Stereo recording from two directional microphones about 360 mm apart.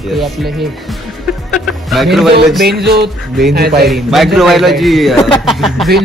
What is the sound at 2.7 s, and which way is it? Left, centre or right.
A man's voice, right.